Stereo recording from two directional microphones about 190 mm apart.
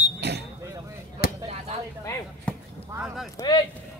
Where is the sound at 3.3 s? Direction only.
20° left (ahead or behind).